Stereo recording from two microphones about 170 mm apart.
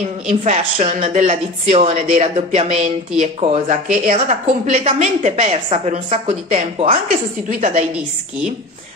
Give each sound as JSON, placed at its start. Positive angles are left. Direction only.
{"t": 0.0, "sound": "a woman's voice", "side_deg": -45}
{"t": 7.1, "sound": "speech", "side_deg": -50}
{"t": 7.9, "sound": "a woman's voice", "side_deg": -5}